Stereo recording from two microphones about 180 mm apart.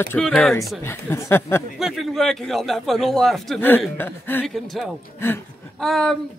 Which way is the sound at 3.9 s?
10° left (ahead or behind).